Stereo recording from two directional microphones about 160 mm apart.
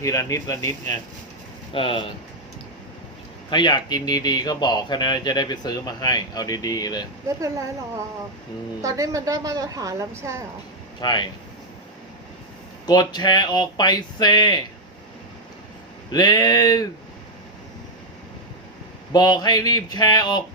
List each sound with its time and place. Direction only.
0.0 s speech: 20° left (ahead or behind)
1.7 s speech: 35° left (ahead or behind)
3.5 s speech: 25° left (ahead or behind)
7.3 s a woman's voice: 20° right (ahead or behind)
8.8 s a woman's voice: 20° right (ahead or behind)
11.0 s speech: 25° left (ahead or behind)
12.8 s speech: 25° left (ahead or behind)
16.1 s speech: 25° left (ahead or behind)
19.1 s speech: 25° left (ahead or behind)